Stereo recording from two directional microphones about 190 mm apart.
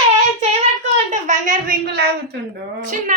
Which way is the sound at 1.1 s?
40° right (ahead or behind).